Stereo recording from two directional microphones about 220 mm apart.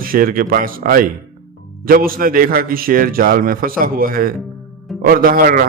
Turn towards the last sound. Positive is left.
turn(degrees=-40)  # may be behind; listen again after turning